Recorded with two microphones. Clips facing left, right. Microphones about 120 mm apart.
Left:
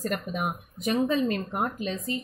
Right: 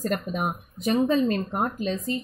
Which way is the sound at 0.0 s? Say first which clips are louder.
Right 3 dB; 35° right (ahead or behind).